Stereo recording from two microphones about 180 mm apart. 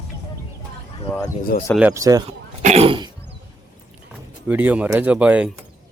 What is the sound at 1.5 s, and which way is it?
Speech, 55° left (ahead or behind).